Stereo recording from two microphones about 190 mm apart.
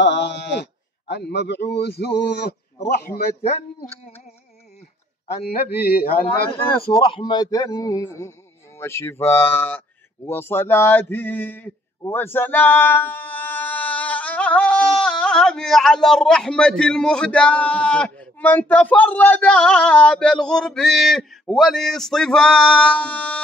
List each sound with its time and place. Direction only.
0.0 s a man's voice: 65° left (ahead or behind)
5.4 s a man's voice: 55° left (ahead or behind)
7.0 s a man's voice: 25° left (ahead or behind); by 23.4 s 5° left (ahead or behind)